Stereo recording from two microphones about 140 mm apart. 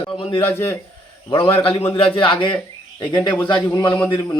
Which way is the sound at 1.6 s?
40° left (ahead or behind).